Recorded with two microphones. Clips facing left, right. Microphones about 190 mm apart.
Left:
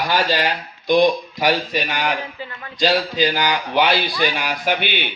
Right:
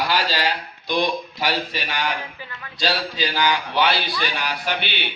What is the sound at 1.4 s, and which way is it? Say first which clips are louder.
Speech: left 6 dB; 45° left (ahead or behind).